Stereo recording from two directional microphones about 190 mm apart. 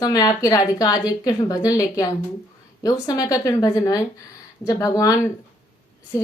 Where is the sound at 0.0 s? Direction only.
20° left (ahead or behind).